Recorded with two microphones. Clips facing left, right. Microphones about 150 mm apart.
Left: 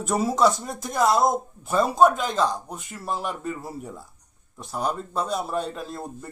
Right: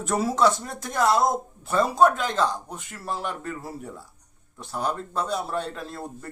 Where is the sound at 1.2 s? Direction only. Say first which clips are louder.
Left 1 dB; 20° left (ahead or behind).